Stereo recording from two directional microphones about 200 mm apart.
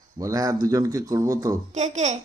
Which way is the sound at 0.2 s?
15° right (ahead or behind).